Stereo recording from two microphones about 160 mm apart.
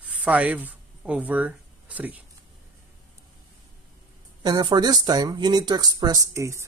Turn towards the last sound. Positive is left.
turn(degrees=-20)  # may be behind; listen again after turning